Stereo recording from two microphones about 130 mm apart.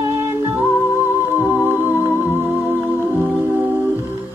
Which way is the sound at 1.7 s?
15° left (ahead or behind).